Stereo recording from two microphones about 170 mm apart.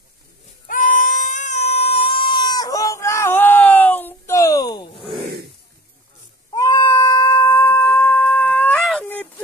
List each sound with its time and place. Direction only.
0.7 s goat: 50° left (ahead or behind); by 5.0 s 25° left (ahead or behind)
6.5 s cat: 20° left (ahead or behind)